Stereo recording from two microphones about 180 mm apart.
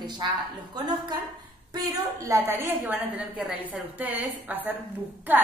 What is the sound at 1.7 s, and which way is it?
A woman's voice, 20° right (ahead or behind).